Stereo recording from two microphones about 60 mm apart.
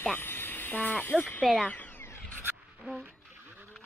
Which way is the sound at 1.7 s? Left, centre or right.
Left.